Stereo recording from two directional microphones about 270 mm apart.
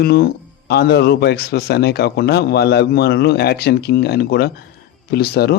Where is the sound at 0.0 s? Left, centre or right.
Left.